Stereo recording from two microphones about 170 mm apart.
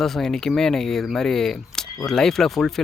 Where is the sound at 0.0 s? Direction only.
Centre (ahead or behind).